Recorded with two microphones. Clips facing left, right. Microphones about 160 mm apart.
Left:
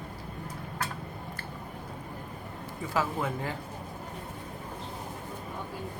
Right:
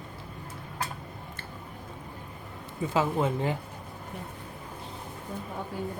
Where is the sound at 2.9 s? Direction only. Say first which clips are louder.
Right 4 dB; 20° right (ahead or behind).